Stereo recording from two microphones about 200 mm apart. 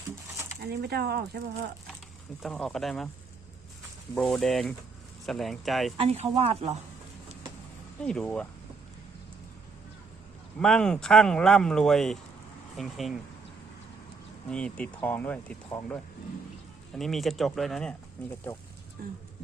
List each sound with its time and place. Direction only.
0.3 s a sound: 15° right (ahead or behind)
0.6 s speech: 55° right (ahead or behind)
2.4 s speech: centre (ahead or behind)
4.1 s speech: 5° left (ahead or behind)
6.0 s speech: 30° right (ahead or behind)
8.0 s speech: 5° left (ahead or behind)
10.6 s speech: 5° left (ahead or behind)
14.5 s speech: 5° left (ahead or behind)
17.0 s speech: centre (ahead or behind)
19.0 s speech: 45° right (ahead or behind)